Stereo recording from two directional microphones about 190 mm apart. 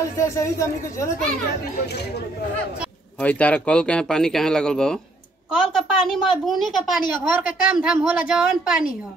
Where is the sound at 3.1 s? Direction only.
5° left (ahead or behind).